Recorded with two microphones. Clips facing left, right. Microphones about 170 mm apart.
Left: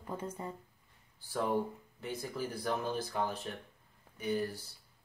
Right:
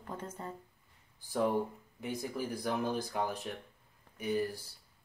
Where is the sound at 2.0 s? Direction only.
15° right (ahead or behind).